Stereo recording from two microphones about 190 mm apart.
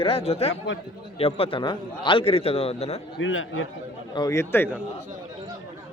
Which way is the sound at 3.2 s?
90° left.